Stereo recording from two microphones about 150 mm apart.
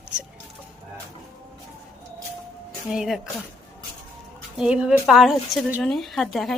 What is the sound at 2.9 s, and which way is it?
Speech, 5° right (ahead or behind).